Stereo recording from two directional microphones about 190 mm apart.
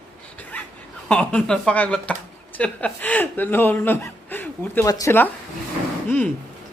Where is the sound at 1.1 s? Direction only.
5° left (ahead or behind).